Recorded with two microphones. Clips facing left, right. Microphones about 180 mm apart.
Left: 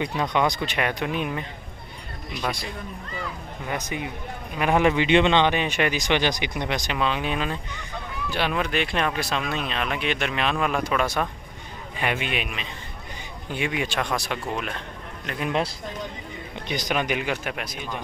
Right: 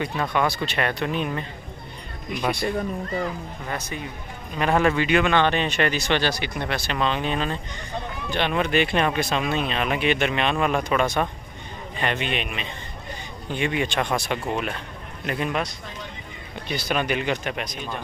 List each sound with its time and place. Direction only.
0.0 s speech: 20° left (ahead or behind)
2.4 s speech: centre (ahead or behind)
3.6 s speech: 15° left (ahead or behind)
16.6 s speech: 15° left (ahead or behind)